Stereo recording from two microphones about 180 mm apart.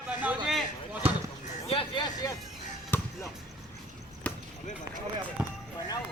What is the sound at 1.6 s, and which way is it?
Vehicle, 30° left (ahead or behind).